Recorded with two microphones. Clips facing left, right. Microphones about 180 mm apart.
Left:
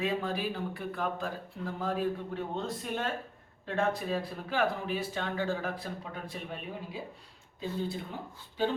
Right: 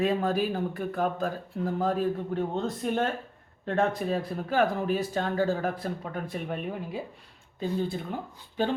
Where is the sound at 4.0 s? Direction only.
45° right (ahead or behind).